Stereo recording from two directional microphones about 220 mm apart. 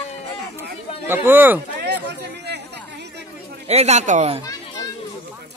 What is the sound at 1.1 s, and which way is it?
Speech, 10° right (ahead or behind).